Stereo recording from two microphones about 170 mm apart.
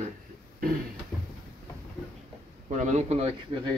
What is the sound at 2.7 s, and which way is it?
A man's voice, 45° right (ahead or behind).